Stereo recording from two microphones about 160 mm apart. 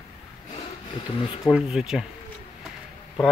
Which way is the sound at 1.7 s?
5° right (ahead or behind).